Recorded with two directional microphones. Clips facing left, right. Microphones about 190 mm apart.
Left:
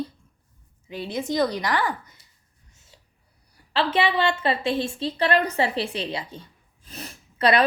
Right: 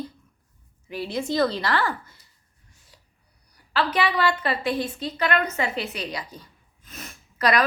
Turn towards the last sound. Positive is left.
turn(degrees=30)  # may be behind; listen again after turning